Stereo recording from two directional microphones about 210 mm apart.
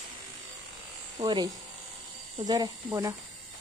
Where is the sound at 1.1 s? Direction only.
20° right (ahead or behind).